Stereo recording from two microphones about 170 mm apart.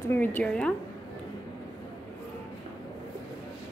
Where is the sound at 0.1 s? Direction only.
10° left (ahead or behind).